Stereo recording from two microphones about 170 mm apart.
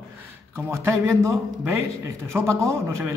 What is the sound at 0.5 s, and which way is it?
A man's voice, 15° right (ahead or behind).